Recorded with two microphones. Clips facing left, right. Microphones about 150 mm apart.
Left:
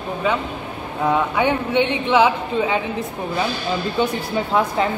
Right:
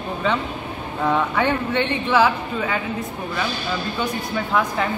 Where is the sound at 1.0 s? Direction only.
10° left (ahead or behind).